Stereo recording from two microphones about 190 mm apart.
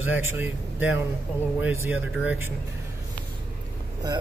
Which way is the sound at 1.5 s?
10° right (ahead or behind).